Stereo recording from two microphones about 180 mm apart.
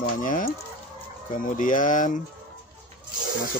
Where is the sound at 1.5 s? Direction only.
45° left (ahead or behind).